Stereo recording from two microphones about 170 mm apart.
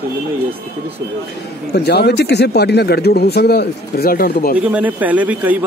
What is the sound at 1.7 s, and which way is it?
Speech, 75° left (ahead or behind).